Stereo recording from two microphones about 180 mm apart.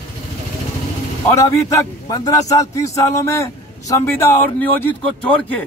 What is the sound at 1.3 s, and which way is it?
A man's voice, 15° left (ahead or behind).